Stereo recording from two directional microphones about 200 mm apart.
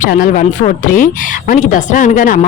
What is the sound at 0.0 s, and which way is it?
Speech, 40° left (ahead or behind).